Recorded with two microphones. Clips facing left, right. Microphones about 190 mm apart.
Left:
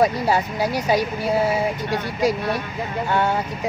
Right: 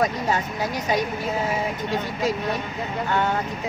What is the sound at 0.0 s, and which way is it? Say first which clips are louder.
Speech: left 4 dB; 10° left (ahead or behind).